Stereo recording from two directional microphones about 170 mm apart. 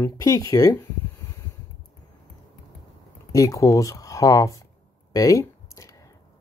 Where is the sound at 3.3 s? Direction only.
20° left (ahead or behind).